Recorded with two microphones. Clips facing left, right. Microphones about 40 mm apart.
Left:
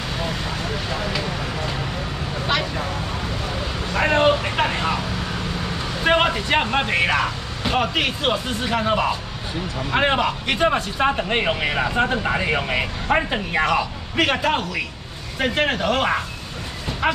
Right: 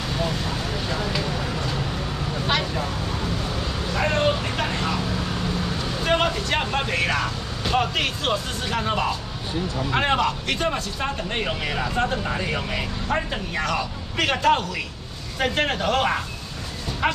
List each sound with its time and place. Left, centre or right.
0.8 s vehicle: centre
3.9 s vehicle: left
6.0 s speech: left
13.7 s a man's voice: centre